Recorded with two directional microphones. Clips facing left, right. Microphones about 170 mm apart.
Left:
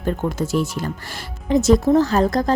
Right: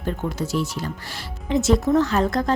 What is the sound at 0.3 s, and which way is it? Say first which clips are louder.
A woman's voice: left 2 dB; 50° left (ahead or behind).